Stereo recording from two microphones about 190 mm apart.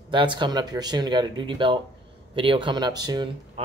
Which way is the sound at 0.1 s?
25° right (ahead or behind).